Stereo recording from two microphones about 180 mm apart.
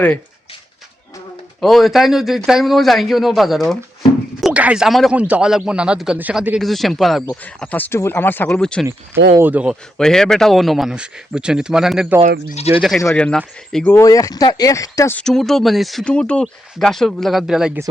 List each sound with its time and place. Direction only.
1.6 s a man's voice: centre (ahead or behind)
9.4 s speech: 10° right (ahead or behind)
10.0 s a man's voice: 5° left (ahead or behind)
13.9 s speech: 20° left (ahead or behind)
15.2 s a man's voice: centre (ahead or behind)